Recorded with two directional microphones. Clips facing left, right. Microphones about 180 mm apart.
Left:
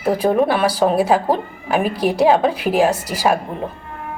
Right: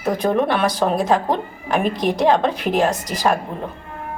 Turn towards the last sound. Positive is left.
turn(degrees=10)  # may be behind; listen again after turning